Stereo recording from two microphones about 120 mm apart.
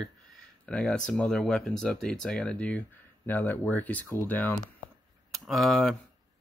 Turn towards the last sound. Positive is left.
turn(degrees=0)  # may be behind; listen again after turning